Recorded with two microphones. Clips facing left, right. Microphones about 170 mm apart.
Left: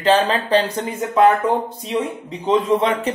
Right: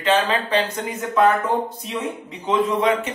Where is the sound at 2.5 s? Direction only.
30° left (ahead or behind).